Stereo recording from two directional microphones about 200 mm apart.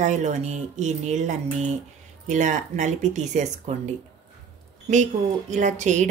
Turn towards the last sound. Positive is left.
turn(degrees=-35)  # may be behind; listen again after turning